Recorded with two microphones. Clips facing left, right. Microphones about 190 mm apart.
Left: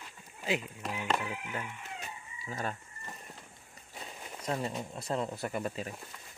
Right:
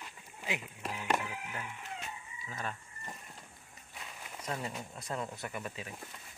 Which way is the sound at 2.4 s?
40° left (ahead or behind).